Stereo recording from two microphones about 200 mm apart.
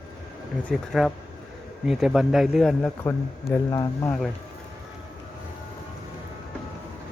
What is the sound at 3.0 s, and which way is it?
Speech, 15° left (ahead or behind).